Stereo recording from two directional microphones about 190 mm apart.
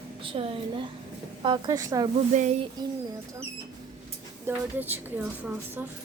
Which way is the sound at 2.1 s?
35° right (ahead or behind).